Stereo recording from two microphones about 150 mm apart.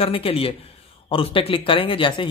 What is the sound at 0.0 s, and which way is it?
A man's voice, 40° left (ahead or behind).